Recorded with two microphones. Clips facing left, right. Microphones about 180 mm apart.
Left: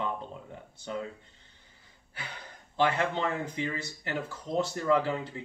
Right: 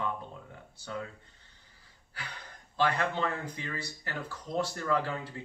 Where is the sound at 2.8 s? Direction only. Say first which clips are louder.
Left 2 dB; 20° left (ahead or behind).